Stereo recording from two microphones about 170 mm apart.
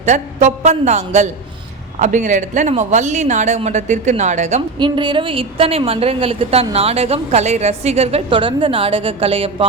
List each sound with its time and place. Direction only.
0.0 s speech: 45° right (ahead or behind)
4.8 s a woman's voice: 30° right (ahead or behind)